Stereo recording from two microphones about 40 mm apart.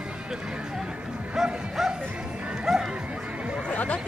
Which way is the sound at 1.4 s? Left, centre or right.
Centre.